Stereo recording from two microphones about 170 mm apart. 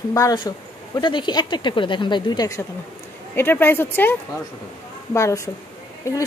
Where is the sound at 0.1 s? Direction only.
20° left (ahead or behind).